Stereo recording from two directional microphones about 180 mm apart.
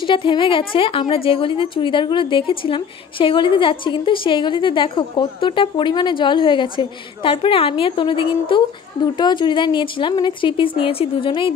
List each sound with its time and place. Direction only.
0.0 s a woman's voice: 25° left (ahead or behind)